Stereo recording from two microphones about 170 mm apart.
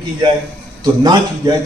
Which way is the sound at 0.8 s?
25° right (ahead or behind).